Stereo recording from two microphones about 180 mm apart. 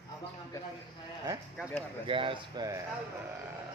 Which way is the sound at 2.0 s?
30° right (ahead or behind).